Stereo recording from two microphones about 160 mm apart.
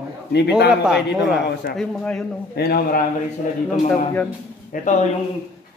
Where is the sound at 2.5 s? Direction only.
75° left (ahead or behind).